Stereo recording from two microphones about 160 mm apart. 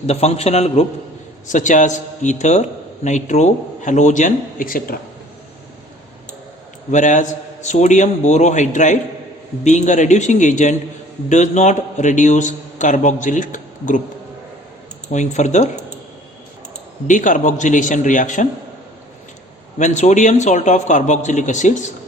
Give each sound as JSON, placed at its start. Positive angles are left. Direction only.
{"t": 0.1, "sound": "a man's voice", "side_deg": 40}
{"t": 6.9, "sound": "a man's voice", "side_deg": 50}
{"t": 15.1, "sound": "a man's voice", "side_deg": 50}
{"t": 17.1, "sound": "a man's voice", "side_deg": 55}
{"t": 19.8, "sound": "a man's voice", "side_deg": 50}